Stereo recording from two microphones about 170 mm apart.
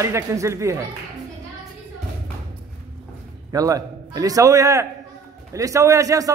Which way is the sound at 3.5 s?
20° right (ahead or behind).